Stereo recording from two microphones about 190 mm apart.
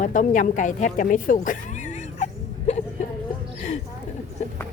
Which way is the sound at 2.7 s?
35° left (ahead or behind).